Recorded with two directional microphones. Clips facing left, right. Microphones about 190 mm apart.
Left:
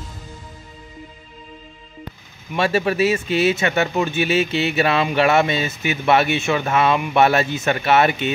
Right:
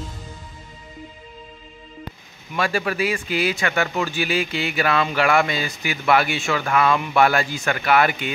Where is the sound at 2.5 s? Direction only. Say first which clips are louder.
Left 4 dB; 25° left (ahead or behind).